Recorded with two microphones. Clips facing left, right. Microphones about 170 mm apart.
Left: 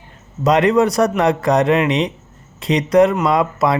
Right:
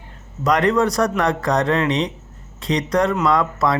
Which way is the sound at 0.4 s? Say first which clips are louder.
Left 4 dB; 20° left (ahead or behind).